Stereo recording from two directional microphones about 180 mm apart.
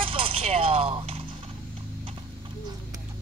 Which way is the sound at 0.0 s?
30° right (ahead or behind).